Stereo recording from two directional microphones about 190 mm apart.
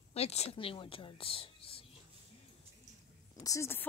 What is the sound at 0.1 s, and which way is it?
Speech, 35° left (ahead or behind).